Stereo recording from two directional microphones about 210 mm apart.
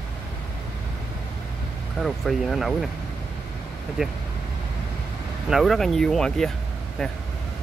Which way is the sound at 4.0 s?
5° right (ahead or behind).